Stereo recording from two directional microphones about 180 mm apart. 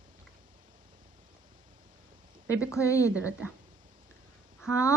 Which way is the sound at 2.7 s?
15° left (ahead or behind).